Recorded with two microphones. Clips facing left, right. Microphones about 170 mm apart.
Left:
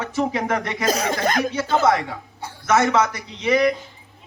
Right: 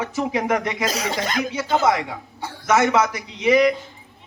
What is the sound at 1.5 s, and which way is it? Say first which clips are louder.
A man's voice: right 2 dB; 15° right (ahead or behind).